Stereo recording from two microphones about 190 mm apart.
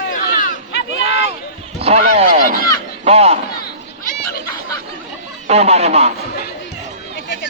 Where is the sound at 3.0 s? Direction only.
30° right (ahead or behind).